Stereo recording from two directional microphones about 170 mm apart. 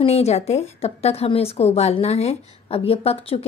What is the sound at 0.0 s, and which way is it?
A woman's voice, 40° left (ahead or behind).